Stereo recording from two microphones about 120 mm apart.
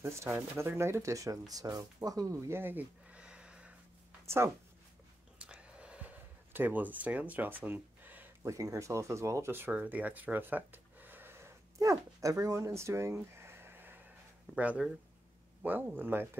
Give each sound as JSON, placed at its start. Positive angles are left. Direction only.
{"t": 0.0, "sound": "speech", "side_deg": -20}
{"t": 5.4, "sound": "gasp", "side_deg": -10}
{"t": 8.5, "sound": "speech", "side_deg": -25}
{"t": 11.8, "sound": "speech", "side_deg": -25}